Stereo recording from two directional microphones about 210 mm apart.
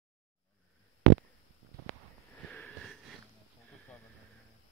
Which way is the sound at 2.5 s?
5° left (ahead or behind).